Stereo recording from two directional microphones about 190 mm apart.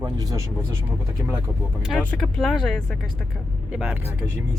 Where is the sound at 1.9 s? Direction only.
Centre (ahead or behind).